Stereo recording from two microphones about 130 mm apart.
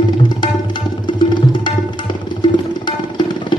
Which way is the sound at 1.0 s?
40° left (ahead or behind).